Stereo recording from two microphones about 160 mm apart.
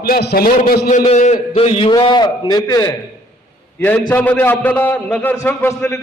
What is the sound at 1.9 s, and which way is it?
A man's voice, 30° left (ahead or behind).